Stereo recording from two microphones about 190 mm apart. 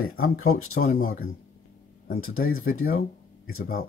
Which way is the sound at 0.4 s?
90° left.